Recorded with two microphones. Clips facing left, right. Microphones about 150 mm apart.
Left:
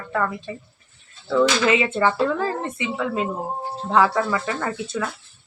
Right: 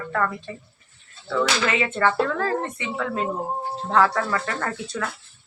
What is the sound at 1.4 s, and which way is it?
Speech, 20° left (ahead or behind).